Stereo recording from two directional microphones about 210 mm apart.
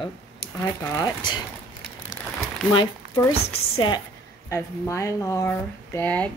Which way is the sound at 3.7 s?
20° left (ahead or behind).